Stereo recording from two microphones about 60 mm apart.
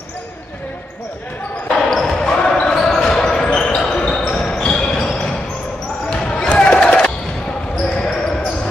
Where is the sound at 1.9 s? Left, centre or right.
Centre.